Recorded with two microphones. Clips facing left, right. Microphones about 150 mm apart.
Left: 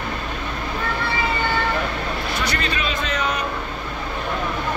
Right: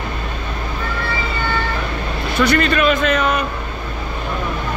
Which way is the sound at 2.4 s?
55° right (ahead or behind).